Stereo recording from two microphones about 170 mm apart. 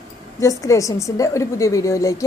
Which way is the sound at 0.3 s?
20° left (ahead or behind).